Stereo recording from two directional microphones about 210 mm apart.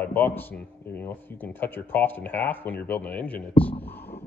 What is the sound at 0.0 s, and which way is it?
Speech, 10° left (ahead or behind).